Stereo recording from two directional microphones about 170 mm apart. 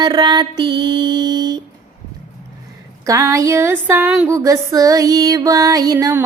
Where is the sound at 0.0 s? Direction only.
25° right (ahead or behind).